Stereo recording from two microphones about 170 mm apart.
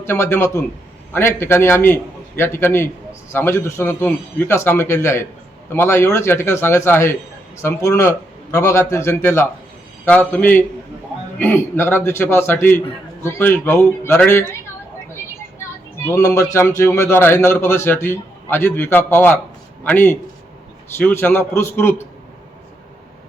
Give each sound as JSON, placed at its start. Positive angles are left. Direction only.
{"t": 0.0, "sound": "a man's voice", "side_deg": 15}
{"t": 16.0, "sound": "a man's voice", "side_deg": 15}